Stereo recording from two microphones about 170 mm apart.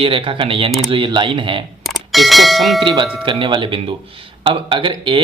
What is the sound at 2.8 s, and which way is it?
Speech, 30° right (ahead or behind).